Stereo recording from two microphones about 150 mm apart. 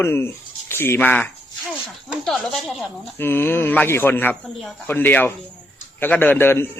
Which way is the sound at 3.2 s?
15° left (ahead or behind).